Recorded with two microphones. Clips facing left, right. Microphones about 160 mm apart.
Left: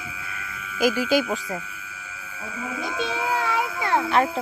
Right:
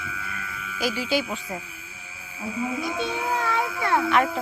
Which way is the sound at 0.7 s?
50° left (ahead or behind).